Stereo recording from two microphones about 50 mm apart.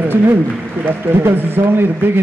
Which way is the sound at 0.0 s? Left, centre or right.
Right.